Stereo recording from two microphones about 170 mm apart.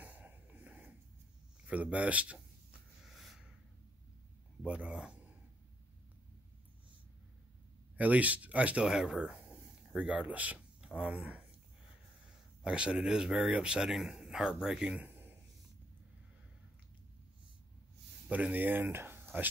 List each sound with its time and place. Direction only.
0.0 s a sound: 10° right (ahead or behind)
1.7 s speech: 10° right (ahead or behind)
3.1 s a sound: centre (ahead or behind)
4.6 s speech: 5° right (ahead or behind)
8.0 s speech: 10° right (ahead or behind)
12.6 s a man's voice: 5° right (ahead or behind)
18.3 s speech: 10° right (ahead or behind)